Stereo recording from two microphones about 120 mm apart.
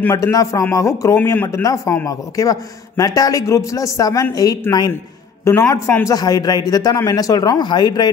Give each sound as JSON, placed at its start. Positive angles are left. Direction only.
{"t": 0.1, "sound": "a man's voice", "side_deg": 25}